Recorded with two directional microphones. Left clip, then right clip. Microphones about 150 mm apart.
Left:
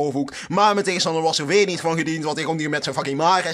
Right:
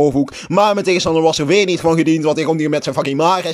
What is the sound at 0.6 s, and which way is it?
A man's voice, 20° right (ahead or behind).